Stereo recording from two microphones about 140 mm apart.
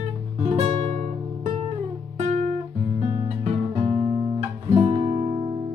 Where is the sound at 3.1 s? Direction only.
45° right (ahead or behind).